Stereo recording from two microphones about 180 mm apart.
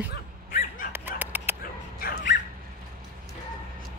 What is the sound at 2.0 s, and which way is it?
Bow-wow, 60° left (ahead or behind).